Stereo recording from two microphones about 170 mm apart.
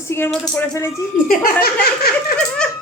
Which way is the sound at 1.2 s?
60° left (ahead or behind).